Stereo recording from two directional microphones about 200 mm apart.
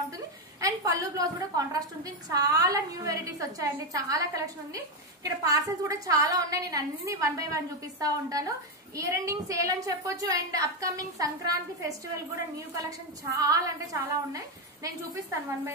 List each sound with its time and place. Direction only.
0.6 s a woman's voice: 15° right (ahead or behind)
13.4 s a woman's voice: 15° right (ahead or behind)